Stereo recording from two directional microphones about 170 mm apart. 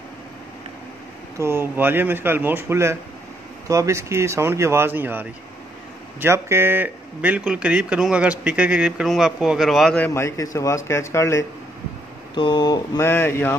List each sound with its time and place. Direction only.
1.4 s speech: 15° right (ahead or behind); by 11.4 s 15° left (ahead or behind)
12.4 s speech: 25° left (ahead or behind)